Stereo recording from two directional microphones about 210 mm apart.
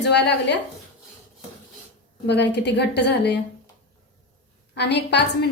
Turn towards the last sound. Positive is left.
turn(degrees=55)  # may be behind; listen again after turning